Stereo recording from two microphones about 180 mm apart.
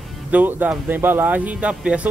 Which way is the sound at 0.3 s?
10° right (ahead or behind).